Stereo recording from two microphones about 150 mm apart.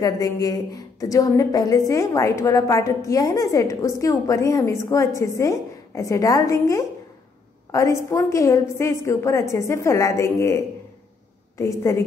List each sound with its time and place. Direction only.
0.0 s a woman's voice: 25° left (ahead or behind)